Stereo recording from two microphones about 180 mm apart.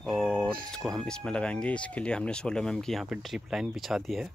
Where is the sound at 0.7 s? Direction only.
Centre (ahead or behind).